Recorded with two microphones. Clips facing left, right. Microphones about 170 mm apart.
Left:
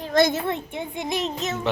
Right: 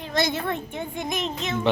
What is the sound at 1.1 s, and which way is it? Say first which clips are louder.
Speech: left 3 dB; 35° left (ahead or behind).